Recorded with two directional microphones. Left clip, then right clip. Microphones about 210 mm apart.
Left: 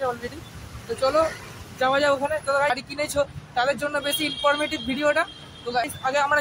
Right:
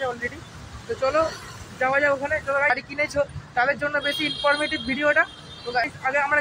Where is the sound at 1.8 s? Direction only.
15° left (ahead or behind).